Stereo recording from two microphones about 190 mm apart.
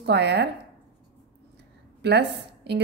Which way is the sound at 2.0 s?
65° right (ahead or behind).